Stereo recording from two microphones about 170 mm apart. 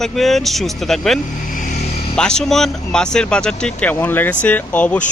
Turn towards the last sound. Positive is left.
turn(degrees=5)  # may be behind; listen again after turning